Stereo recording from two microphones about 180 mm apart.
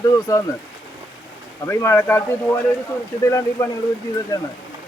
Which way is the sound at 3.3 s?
15° left (ahead or behind).